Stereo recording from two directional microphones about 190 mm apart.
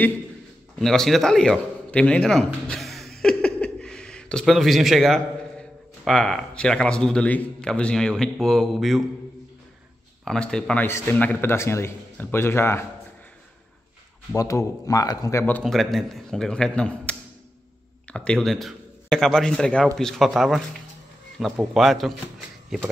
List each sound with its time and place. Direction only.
0.7 s a man's voice: centre (ahead or behind)
10.2 s a man's voice: 5° left (ahead or behind)
14.3 s a man's voice: 15° left (ahead or behind); by 22.1 s centre (ahead or behind)